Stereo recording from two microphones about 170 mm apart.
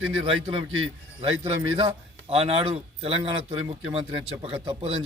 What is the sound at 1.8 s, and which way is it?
A man's voice, 35° right (ahead or behind).